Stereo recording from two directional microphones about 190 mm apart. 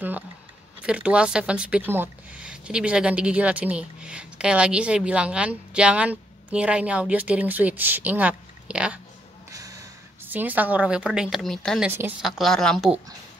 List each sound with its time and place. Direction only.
0.8 s speech: 5° right (ahead or behind)
9.5 s a sound: 20° right (ahead or behind)
10.3 s speech: 10° right (ahead or behind)